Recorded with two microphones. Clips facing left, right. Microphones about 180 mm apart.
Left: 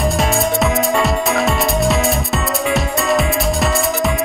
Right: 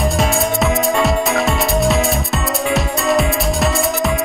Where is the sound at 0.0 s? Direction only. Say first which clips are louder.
Even; centre (ahead or behind).